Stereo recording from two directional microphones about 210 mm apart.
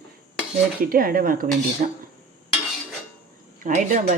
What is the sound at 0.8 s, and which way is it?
Speech, 45° right (ahead or behind).